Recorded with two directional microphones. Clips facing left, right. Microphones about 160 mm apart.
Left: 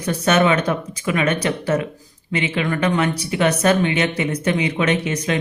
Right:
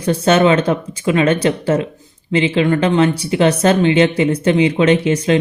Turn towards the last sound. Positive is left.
turn(degrees=-30)  # may be behind; listen again after turning